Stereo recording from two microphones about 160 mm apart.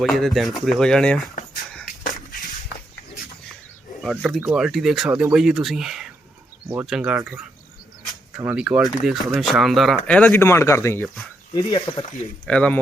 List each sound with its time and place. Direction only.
0.0 s speech: centre (ahead or behind)
2.0 s a sound: 55° left (ahead or behind)
4.0 s speech: centre (ahead or behind)
8.4 s speech: 5° right (ahead or behind); by 11.1 s 15° left (ahead or behind)
11.5 s speech: 25° left (ahead or behind)
12.5 s speech: 5° left (ahead or behind)